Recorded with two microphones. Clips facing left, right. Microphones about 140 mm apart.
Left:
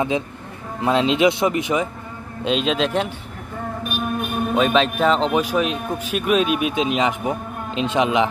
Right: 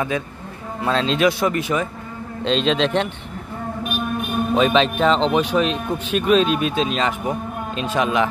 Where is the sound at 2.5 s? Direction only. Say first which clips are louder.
Right 1 dB; 5° left (ahead or behind).